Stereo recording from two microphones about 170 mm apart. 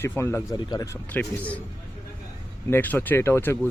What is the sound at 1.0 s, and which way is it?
Speech, 10° left (ahead or behind).